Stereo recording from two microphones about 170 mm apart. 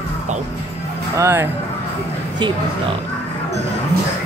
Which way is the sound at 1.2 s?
15° right (ahead or behind).